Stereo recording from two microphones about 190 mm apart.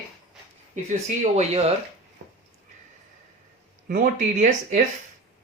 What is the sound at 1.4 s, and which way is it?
Speech, 35° right (ahead or behind).